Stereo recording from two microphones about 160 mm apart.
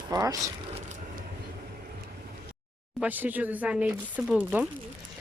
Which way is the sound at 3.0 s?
10° right (ahead or behind).